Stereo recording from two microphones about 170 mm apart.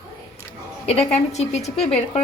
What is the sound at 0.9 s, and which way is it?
A woman's voice, 40° left (ahead or behind).